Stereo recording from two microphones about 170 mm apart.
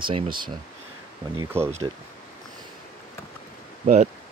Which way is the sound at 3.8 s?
45° right (ahead or behind).